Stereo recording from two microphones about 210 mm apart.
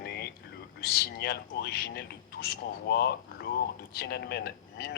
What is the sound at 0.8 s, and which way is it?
A man's voice, 50° left (ahead or behind).